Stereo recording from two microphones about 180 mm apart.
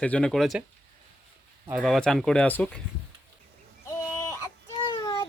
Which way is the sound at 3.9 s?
15° left (ahead or behind).